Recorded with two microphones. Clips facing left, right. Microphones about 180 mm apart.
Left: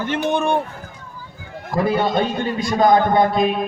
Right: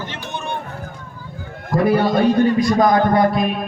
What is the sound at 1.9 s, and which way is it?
A man's voice, 25° left (ahead or behind).